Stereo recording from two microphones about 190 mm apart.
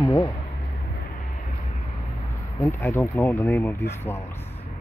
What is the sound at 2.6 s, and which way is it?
Speech, 10° left (ahead or behind).